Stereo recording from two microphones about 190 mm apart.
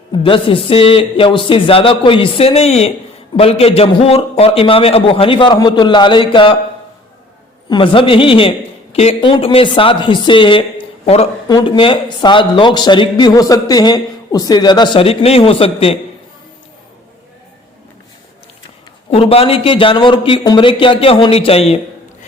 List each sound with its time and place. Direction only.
0.1 s a man's voice: 25° left (ahead or behind)
7.7 s a man's voice: 25° left (ahead or behind)
11.4 s a man's voice: 20° left (ahead or behind)
19.1 s a man's voice: 30° left (ahead or behind)